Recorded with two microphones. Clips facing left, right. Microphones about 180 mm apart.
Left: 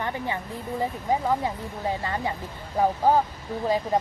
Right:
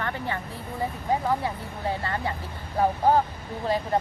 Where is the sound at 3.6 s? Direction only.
15° left (ahead or behind).